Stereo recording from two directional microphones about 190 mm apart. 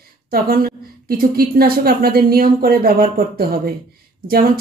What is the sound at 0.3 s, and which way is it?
Speech, 50° right (ahead or behind).